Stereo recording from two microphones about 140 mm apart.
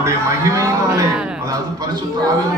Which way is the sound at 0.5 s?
25° right (ahead or behind).